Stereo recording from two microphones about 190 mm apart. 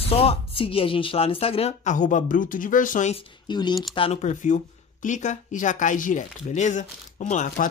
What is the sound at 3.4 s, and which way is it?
Speech, 20° left (ahead or behind).